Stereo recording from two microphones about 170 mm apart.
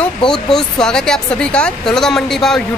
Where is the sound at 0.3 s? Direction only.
5° left (ahead or behind).